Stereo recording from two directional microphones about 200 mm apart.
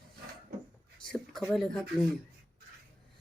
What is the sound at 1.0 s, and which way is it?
Speech, centre (ahead or behind).